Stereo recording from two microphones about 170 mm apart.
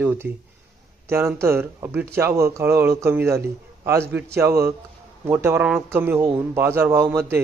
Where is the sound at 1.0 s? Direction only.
15° right (ahead or behind).